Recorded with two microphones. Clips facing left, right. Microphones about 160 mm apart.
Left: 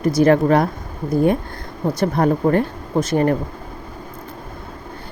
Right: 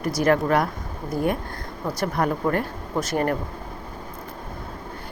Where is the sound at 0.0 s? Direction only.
25° left (ahead or behind).